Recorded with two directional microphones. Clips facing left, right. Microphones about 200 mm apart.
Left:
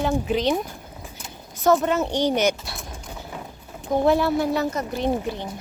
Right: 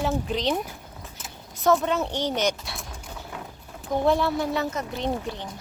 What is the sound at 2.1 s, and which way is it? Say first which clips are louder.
Speech: left 5 dB; 15° left (ahead or behind).